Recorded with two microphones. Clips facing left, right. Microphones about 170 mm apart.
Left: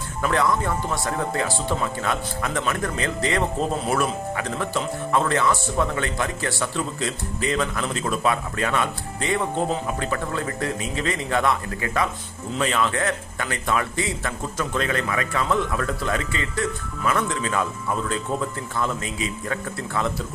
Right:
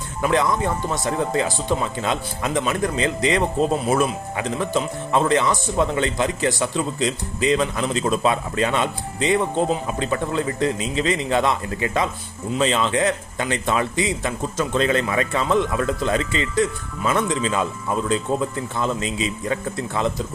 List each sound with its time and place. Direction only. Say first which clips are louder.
0.2 s speech: right 2 dB; 20° right (ahead or behind)